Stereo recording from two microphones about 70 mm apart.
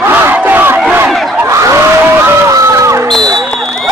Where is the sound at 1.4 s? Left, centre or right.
Right.